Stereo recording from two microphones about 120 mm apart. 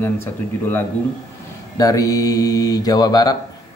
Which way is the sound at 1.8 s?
30° left (ahead or behind).